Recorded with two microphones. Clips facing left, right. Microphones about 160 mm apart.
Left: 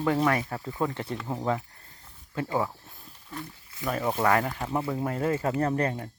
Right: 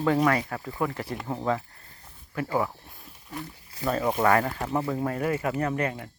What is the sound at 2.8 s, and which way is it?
Snake, 15° right (ahead or behind).